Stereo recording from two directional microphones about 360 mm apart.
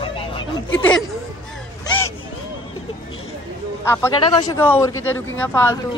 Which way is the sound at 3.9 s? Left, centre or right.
Centre.